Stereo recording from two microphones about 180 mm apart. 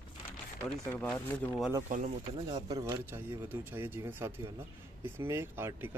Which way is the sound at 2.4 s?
25° right (ahead or behind).